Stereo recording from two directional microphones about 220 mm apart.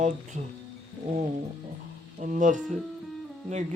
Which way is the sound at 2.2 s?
35° right (ahead or behind).